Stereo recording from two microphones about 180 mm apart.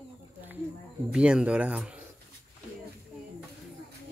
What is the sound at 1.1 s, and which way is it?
Speech, 5° right (ahead or behind).